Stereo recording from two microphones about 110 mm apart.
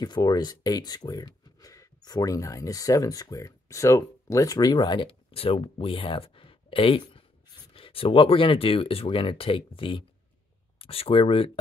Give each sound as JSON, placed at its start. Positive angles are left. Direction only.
{"t": 0.0, "sound": "speech", "side_deg": 40}